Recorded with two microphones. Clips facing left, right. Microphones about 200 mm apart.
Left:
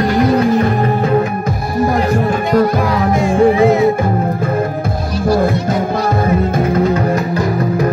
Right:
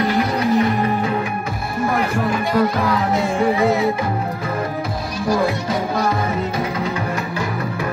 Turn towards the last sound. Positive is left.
turn(degrees=40)  # may be behind; listen again after turning